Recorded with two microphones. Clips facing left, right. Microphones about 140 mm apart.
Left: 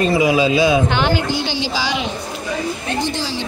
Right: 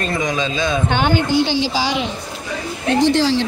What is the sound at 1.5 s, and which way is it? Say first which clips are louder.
Speech: right 3 dB; 45° right (ahead or behind).